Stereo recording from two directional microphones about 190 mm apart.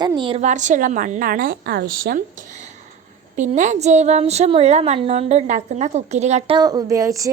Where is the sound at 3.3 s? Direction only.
40° right (ahead or behind).